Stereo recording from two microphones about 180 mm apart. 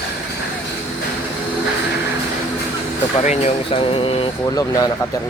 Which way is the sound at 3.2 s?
40° left (ahead or behind).